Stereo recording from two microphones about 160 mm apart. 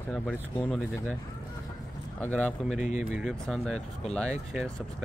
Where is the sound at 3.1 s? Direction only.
Centre (ahead or behind).